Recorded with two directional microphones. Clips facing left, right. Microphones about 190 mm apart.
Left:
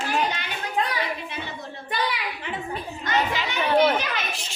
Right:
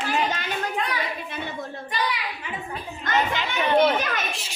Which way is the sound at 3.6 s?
5° left (ahead or behind).